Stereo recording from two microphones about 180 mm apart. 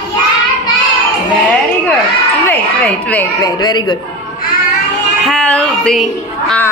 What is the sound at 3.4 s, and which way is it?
Speech, 25° left (ahead or behind).